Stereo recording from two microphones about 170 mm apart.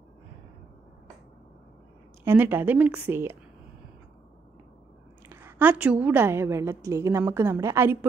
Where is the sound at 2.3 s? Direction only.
10° right (ahead or behind).